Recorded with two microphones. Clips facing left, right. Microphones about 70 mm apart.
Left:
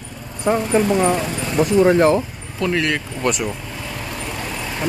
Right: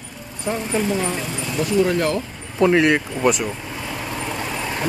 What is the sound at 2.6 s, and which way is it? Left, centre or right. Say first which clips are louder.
Speech: right 5 dB; right.